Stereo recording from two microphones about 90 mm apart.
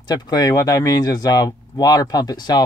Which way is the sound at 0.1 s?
45° left (ahead or behind).